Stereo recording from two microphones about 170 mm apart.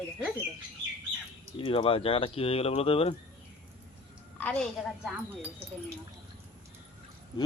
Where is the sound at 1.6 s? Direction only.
30° left (ahead or behind).